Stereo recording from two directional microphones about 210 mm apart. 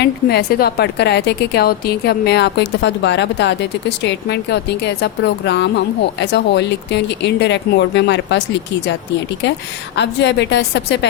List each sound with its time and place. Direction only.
0.0 s a woman's voice: 50° left (ahead or behind)
9.9 s a woman's voice: 55° left (ahead or behind)